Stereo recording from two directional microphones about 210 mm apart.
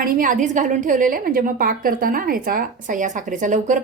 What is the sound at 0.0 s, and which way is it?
Speech, 40° right (ahead or behind).